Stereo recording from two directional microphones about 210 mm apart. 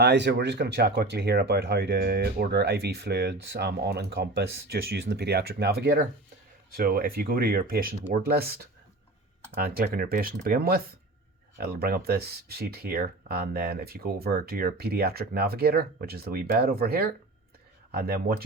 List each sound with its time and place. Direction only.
0.0 s speech: 55° right (ahead or behind)